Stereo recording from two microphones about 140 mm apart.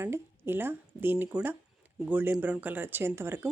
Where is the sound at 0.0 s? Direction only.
15° right (ahead or behind).